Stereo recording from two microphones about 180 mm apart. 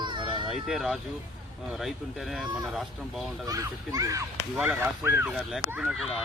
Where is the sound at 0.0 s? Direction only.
25° right (ahead or behind).